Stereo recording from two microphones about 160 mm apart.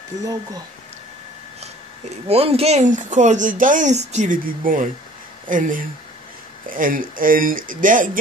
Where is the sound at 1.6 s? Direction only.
40° right (ahead or behind).